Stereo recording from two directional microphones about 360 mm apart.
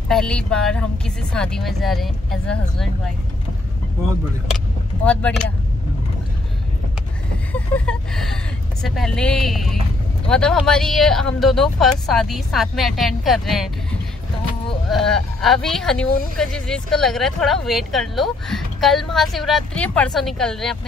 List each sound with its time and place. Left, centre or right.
0.1 s speech: centre
5.0 s speech: centre
7.5 s a sound: centre
8.8 s speech: centre
14.9 s speech: centre